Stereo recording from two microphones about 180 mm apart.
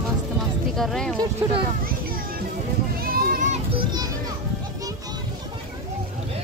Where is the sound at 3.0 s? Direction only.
50° right (ahead or behind).